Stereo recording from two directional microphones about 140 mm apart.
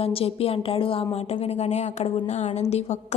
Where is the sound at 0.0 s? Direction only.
45° left (ahead or behind).